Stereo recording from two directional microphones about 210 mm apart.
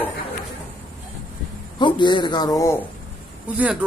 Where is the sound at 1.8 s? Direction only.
20° left (ahead or behind).